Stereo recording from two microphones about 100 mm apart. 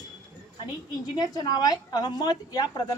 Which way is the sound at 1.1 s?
40° left (ahead or behind).